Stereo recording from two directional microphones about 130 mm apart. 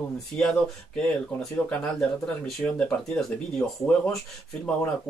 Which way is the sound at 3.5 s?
10° left (ahead or behind).